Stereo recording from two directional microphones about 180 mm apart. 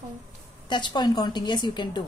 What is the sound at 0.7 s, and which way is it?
A woman's voice, 25° left (ahead or behind).